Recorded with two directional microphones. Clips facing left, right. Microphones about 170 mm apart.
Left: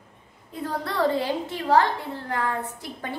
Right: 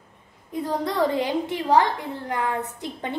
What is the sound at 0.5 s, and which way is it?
A woman's voice, 15° right (ahead or behind).